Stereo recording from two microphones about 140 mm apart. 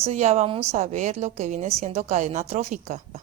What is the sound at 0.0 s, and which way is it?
A woman's voice, 50° right (ahead or behind).